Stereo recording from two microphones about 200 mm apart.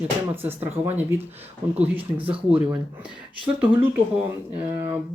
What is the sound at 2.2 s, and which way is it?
Speech, 10° right (ahead or behind).